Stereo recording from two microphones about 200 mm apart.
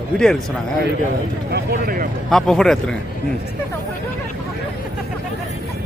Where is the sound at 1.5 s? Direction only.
50° right (ahead or behind).